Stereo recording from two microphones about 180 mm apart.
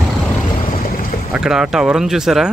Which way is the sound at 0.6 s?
50° left (ahead or behind).